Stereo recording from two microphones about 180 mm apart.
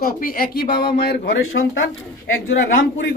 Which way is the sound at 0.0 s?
50° left (ahead or behind).